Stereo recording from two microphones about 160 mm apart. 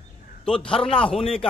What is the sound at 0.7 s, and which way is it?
Speech, 35° left (ahead or behind).